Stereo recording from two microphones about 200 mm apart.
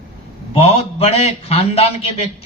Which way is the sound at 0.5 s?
30° left (ahead or behind).